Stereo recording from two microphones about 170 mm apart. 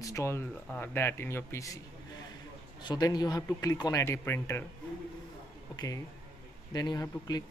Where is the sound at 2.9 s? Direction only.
25° left (ahead or behind).